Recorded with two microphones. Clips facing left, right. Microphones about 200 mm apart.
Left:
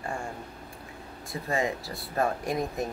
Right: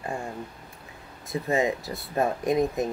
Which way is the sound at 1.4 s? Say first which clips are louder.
Right 4 dB; 20° right (ahead or behind).